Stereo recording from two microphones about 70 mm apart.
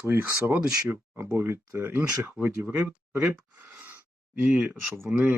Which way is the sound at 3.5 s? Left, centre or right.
Right.